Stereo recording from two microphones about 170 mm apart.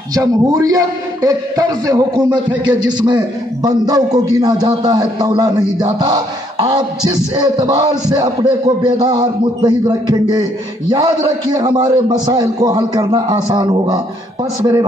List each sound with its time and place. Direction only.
0.1 s a man's voice: 20° right (ahead or behind)